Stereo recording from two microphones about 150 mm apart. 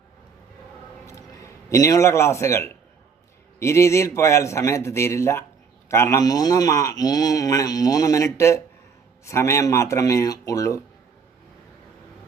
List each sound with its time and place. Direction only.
1.0 s a man's voice: 20° left (ahead or behind)